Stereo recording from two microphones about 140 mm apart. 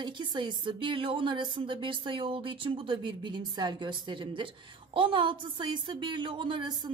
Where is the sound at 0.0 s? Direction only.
35° right (ahead or behind).